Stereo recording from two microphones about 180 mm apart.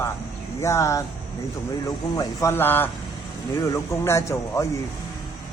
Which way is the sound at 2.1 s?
15° left (ahead or behind).